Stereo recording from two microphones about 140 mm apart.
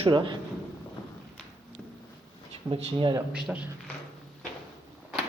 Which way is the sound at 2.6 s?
40° right (ahead or behind).